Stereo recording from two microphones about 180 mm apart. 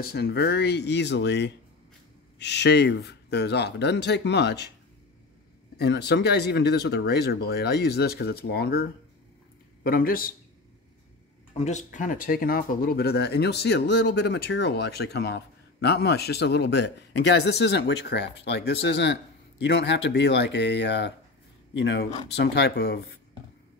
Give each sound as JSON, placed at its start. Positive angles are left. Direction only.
{"t": 0.0, "sound": "speech", "side_deg": 60}
{"t": 5.8, "sound": "speech", "side_deg": 65}
{"t": 9.8, "sound": "speech", "side_deg": 55}
{"t": 11.5, "sound": "speech", "side_deg": 40}